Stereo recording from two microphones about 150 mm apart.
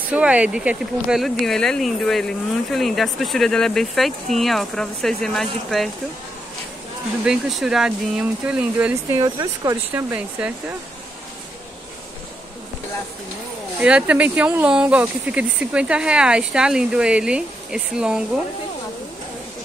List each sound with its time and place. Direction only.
0.1 s speech: 10° right (ahead or behind)
7.2 s speech: centre (ahead or behind)
9.2 s speech: 25° right (ahead or behind)
13.7 s speech: 10° right (ahead or behind)